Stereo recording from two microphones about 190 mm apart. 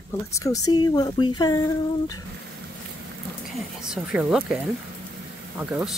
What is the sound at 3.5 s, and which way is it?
Speech, 5° right (ahead or behind).